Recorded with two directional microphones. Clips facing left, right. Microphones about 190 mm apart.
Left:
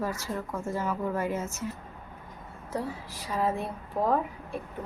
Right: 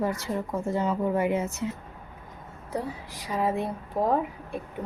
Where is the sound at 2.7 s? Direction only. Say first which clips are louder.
Right 1 dB; 15° right (ahead or behind).